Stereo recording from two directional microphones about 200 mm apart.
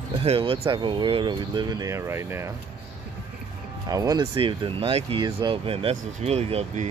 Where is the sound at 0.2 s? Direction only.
30° right (ahead or behind).